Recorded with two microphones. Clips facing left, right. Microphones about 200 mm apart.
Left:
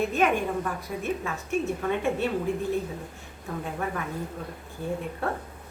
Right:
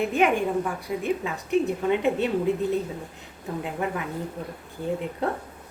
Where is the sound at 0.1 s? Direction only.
15° right (ahead or behind).